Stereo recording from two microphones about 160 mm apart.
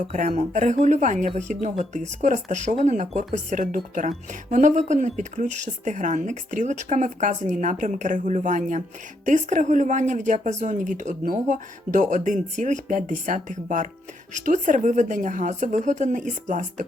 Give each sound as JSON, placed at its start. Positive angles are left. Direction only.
{"t": 0.1, "sound": "a woman's voice", "side_deg": -45}